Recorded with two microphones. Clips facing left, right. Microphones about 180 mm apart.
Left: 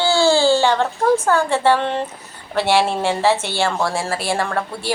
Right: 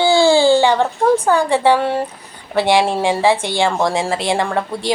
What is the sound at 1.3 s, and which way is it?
Speech, 15° right (ahead or behind).